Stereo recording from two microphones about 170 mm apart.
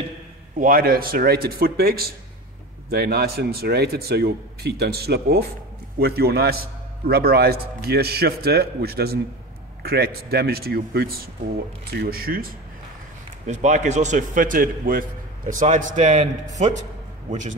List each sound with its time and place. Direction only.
0.6 s a man's voice: 55° right (ahead or behind)
13.5 s a man's voice: 45° right (ahead or behind)